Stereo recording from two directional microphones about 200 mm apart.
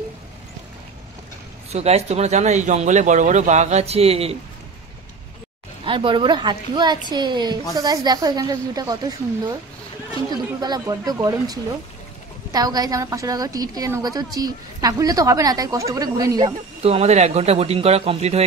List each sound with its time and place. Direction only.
1.7 s speech: 30° right (ahead or behind)
5.9 s a woman's voice: 25° right (ahead or behind)
16.8 s speech: 30° right (ahead or behind)